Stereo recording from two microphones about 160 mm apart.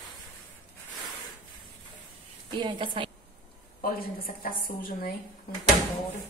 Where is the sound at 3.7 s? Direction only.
60° left (ahead or behind).